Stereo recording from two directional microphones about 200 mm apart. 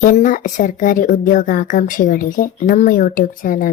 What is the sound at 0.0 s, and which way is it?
A woman's voice, 40° left (ahead or behind).